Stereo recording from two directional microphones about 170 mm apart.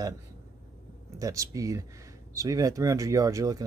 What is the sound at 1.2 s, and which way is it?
Speech, 20° right (ahead or behind).